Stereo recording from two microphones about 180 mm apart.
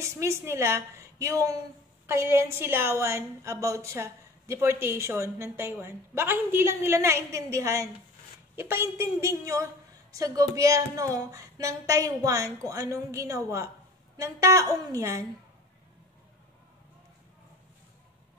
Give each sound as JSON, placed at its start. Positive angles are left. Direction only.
{"t": 0.0, "sound": "a woman's voice", "side_deg": -15}